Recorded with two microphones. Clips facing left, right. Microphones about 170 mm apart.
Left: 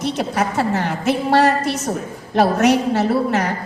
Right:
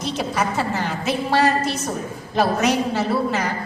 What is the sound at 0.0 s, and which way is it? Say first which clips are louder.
A woman's voice: left 3 dB; 65° left (ahead or behind).